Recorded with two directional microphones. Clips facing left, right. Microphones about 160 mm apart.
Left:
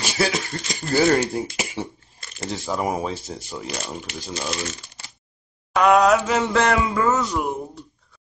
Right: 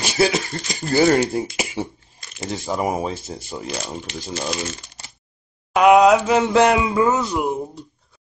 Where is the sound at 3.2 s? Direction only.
25° right (ahead or behind).